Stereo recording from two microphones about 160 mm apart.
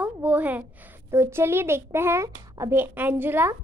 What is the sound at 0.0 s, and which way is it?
A woman's voice, 10° right (ahead or behind).